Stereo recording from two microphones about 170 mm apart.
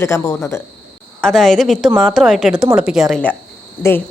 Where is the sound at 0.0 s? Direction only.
15° left (ahead or behind).